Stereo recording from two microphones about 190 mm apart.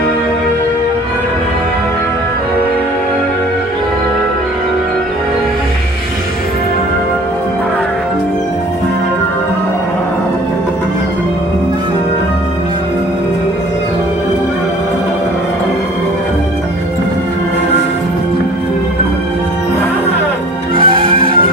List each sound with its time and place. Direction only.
20.7 s music: 30° right (ahead or behind)